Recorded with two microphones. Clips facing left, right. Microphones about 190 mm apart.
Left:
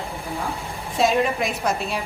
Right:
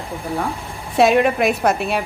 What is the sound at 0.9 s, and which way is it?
A woman's voice, 65° right (ahead or behind).